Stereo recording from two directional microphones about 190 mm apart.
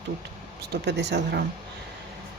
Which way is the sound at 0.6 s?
60° right (ahead or behind).